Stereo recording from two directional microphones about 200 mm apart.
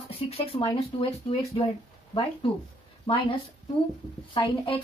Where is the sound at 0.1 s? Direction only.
25° left (ahead or behind).